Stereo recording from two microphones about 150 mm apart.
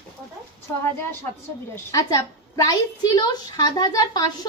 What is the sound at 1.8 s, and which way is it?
Speech, 20° left (ahead or behind).